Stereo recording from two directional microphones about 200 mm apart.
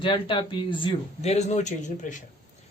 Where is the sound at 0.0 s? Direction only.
25° left (ahead or behind).